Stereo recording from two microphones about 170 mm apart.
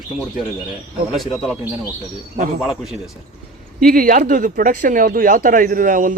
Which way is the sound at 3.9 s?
55° right (ahead or behind).